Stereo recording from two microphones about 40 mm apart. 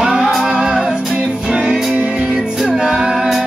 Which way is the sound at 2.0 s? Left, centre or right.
Right.